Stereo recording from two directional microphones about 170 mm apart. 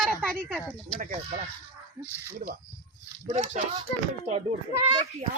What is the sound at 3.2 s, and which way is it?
Speech, 40° right (ahead or behind).